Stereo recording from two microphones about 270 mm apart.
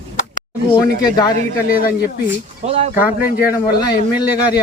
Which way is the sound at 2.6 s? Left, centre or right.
Right.